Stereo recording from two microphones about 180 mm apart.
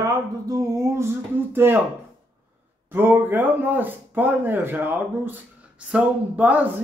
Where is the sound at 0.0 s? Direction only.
20° right (ahead or behind).